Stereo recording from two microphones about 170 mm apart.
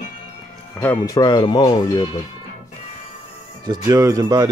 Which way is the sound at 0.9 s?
25° left (ahead or behind).